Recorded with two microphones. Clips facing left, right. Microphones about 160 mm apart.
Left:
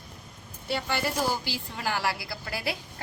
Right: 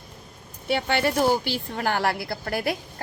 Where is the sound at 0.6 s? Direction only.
65° right (ahead or behind).